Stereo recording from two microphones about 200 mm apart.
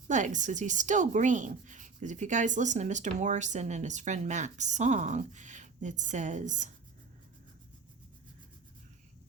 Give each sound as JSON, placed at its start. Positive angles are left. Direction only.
{"t": 0.1, "sound": "speech", "side_deg": -40}